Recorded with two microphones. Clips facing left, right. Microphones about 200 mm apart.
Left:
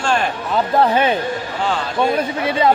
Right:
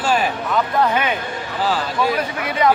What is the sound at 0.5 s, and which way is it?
A man's voice, 30° left (ahead or behind).